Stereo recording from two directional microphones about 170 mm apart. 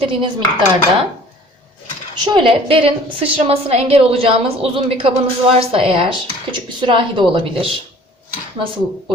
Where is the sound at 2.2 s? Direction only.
30° right (ahead or behind).